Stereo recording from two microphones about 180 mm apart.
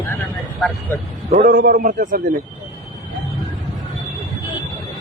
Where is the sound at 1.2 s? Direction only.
45° right (ahead or behind).